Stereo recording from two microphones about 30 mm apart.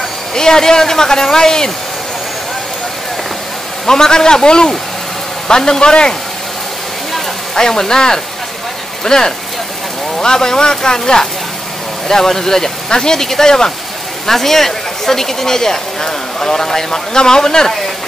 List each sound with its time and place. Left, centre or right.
0.3 s speech: centre
3.8 s speech: centre
5.8 s speech: left
7.5 s speech: centre